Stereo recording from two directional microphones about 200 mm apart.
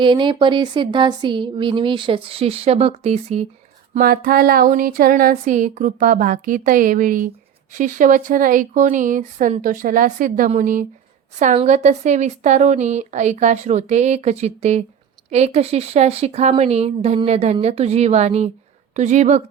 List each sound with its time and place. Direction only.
0.0 s a woman's voice: 25° right (ahead or behind)
3.9 s a sound: 45° right (ahead or behind)
7.7 s a woman's voice: 40° right (ahead or behind)